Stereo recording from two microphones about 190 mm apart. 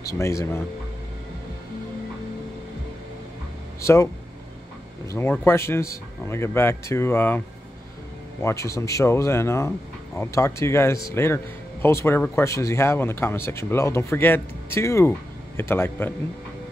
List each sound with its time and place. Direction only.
0.1 s speech: 15° left (ahead or behind)
3.8 s speech: 15° left (ahead or behind)
5.1 s speech: 10° left (ahead or behind)